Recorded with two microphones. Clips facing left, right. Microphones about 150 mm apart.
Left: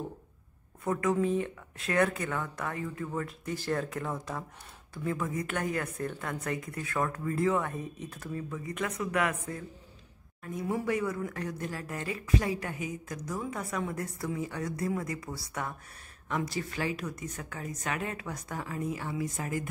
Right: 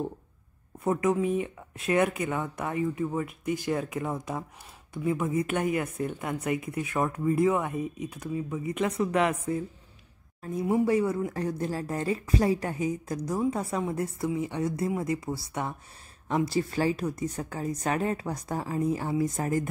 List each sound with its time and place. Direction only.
1.4 s a woman's voice: 20° right (ahead or behind); by 19.7 s 40° right (ahead or behind)